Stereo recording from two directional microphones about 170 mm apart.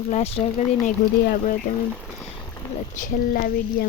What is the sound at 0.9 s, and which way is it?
Speech, 50° left (ahead or behind).